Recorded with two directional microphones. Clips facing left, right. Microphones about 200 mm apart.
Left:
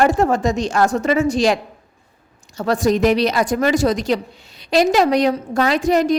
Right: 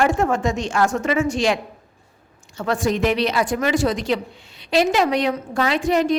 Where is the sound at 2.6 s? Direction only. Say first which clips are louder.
Left 4 dB; 40° left (ahead or behind).